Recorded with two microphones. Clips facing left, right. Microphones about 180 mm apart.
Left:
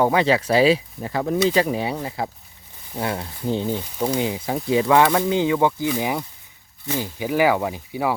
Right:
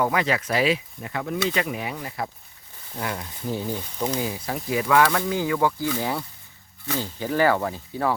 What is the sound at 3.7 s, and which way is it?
Speech, 10° left (ahead or behind).